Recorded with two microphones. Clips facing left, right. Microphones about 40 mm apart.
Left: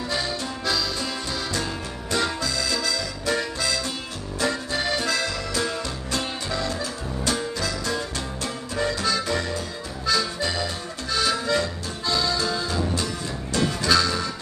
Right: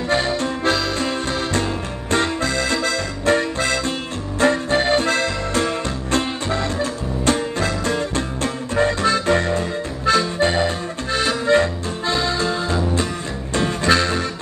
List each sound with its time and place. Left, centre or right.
0.1 s accordion: right
4.4 s music: right